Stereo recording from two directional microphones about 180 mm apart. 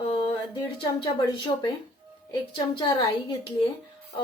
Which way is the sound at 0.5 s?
25° left (ahead or behind).